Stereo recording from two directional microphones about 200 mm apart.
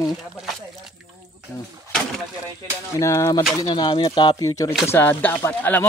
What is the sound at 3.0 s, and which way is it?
Speech, 15° left (ahead or behind).